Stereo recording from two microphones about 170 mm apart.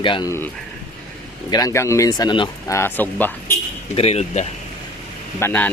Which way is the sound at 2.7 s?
15° left (ahead or behind).